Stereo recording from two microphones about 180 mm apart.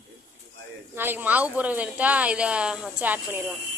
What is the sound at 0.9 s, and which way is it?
Speech, 10° right (ahead or behind).